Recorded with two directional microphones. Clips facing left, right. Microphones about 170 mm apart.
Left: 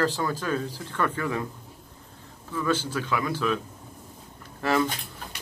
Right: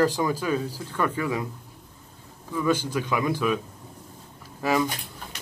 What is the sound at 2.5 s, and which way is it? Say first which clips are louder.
Speech: right 2 dB; 15° right (ahead or behind).